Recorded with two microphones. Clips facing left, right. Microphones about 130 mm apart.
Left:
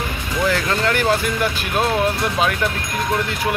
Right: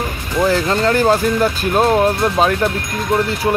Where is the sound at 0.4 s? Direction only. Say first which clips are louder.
Right 5 dB; 30° right (ahead or behind).